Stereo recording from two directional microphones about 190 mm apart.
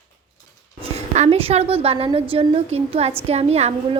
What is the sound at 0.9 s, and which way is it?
A woman's voice, 35° right (ahead or behind).